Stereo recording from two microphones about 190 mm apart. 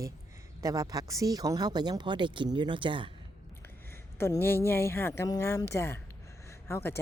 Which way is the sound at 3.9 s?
15° left (ahead or behind).